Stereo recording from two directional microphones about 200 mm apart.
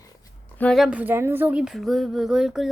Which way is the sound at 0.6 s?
Centre (ahead or behind).